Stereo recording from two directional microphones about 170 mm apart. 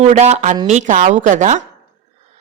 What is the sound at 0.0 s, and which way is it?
A woman's voice, 40° right (ahead or behind).